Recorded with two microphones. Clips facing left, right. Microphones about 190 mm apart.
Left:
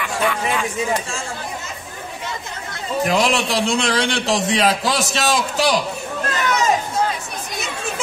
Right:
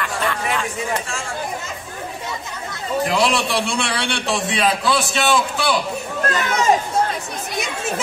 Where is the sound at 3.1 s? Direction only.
45° left (ahead or behind).